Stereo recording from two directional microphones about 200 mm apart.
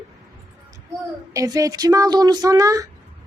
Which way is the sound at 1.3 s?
15° right (ahead or behind).